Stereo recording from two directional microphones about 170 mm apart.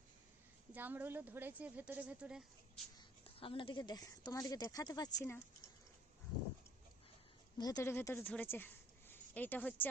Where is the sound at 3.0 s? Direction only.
30° left (ahead or behind).